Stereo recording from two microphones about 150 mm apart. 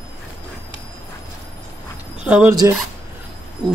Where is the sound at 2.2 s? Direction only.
10° right (ahead or behind).